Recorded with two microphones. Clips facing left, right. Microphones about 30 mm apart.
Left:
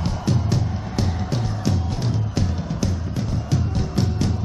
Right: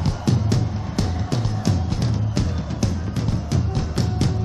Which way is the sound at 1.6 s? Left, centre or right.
Centre.